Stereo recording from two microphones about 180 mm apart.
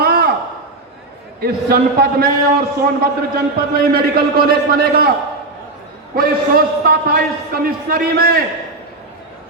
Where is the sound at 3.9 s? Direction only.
60° right (ahead or behind).